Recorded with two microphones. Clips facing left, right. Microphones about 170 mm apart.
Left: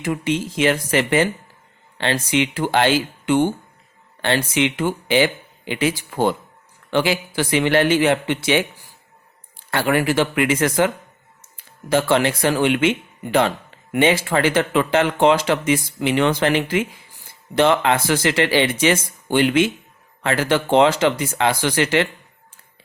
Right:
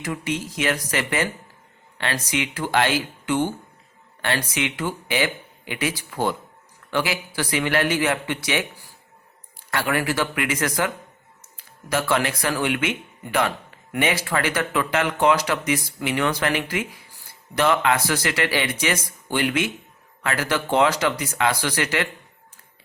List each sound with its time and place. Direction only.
0.0 s speech: 25° left (ahead or behind)